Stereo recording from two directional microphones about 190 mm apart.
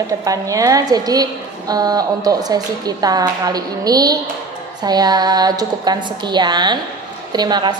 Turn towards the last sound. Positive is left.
turn(degrees=-20)  # may be behind; listen again after turning